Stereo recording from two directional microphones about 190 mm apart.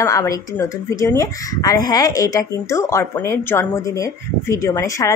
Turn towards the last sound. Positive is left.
turn(degrees=15)  # may be behind; listen again after turning